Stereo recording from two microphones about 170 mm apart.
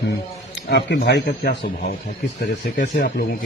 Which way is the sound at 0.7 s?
85° left.